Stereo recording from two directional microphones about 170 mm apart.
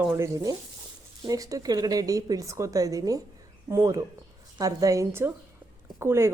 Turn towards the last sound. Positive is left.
turn(degrees=-15)  # may be behind; listen again after turning